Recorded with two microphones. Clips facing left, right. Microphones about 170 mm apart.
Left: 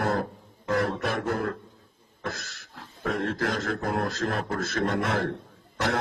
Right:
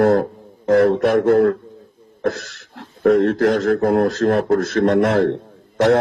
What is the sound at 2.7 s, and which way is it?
A man's voice, 70° right (ahead or behind).